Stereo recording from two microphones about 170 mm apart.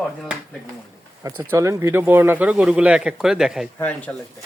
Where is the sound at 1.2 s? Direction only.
15° right (ahead or behind).